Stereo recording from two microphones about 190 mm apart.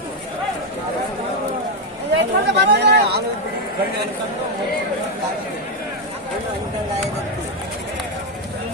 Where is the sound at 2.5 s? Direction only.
65° right (ahead or behind).